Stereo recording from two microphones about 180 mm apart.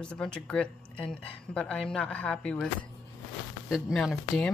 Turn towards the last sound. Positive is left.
turn(degrees=5)  # may be behind; listen again after turning